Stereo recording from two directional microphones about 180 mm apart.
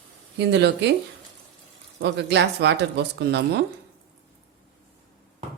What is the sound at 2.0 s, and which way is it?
Speech, 75° right (ahead or behind).